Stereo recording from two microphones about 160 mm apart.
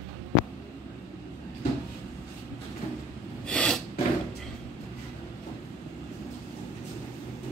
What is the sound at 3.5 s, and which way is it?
Sneeze, 5° left (ahead or behind).